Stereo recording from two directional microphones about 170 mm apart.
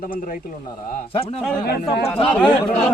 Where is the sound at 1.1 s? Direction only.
35° left (ahead or behind).